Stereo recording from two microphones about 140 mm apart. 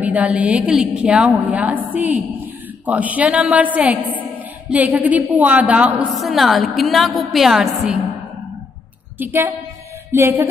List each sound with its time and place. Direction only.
0.0 s a woman's voice: 10° right (ahead or behind)
9.2 s a woman's voice: 15° right (ahead or behind)